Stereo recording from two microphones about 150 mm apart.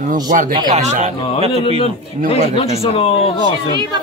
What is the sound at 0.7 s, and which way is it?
Speech, 50° right (ahead or behind).